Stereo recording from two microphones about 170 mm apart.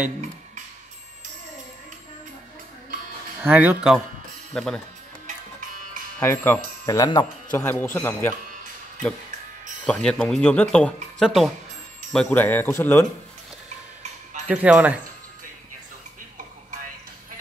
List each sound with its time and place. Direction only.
3.4 s speech: 10° right (ahead or behind)
4.6 s speech: 5° left (ahead or behind)
6.1 s speech: 15° left (ahead or behind)
9.8 s speech: 5° left (ahead or behind)
14.5 s speech: 10° right (ahead or behind)